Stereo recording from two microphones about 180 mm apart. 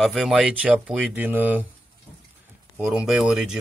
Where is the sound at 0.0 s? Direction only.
Centre (ahead or behind).